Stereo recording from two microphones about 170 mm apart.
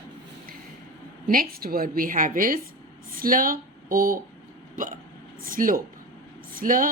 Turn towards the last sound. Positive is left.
turn(degrees=-55)  # may be behind; listen again after turning